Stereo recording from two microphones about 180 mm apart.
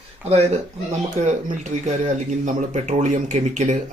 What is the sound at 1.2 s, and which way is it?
Speech, 40° right (ahead or behind).